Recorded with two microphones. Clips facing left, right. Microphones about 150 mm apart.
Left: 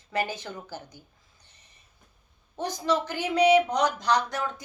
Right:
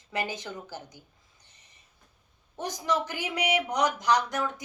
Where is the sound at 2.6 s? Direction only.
15° right (ahead or behind).